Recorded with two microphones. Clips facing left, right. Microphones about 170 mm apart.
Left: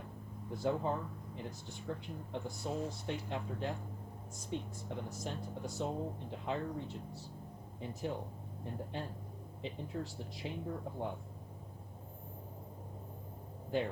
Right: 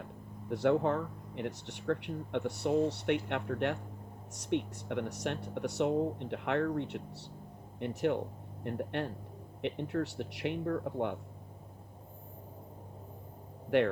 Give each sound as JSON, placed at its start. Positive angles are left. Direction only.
{"t": 0.5, "sound": "speech", "side_deg": -75}
{"t": 13.7, "sound": "speech", "side_deg": -75}